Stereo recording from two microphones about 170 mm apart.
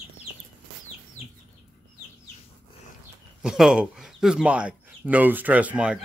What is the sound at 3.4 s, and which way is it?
Speech, 5° right (ahead or behind).